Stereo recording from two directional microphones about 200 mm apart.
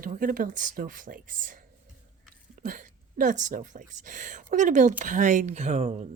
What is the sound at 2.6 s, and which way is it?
A woman's voice, 40° right (ahead or behind).